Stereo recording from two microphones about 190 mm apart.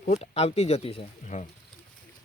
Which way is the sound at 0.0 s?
35° left (ahead or behind).